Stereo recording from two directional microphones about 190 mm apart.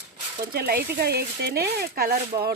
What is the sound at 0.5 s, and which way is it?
Speech, 55° right (ahead or behind).